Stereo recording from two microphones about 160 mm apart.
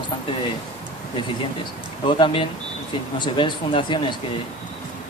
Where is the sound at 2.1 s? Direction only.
35° left (ahead or behind).